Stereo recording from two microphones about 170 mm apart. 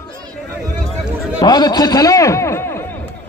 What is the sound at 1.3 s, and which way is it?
A man's voice, 20° left (ahead or behind).